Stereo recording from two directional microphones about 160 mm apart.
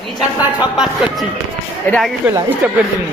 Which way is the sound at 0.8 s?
5° right (ahead or behind).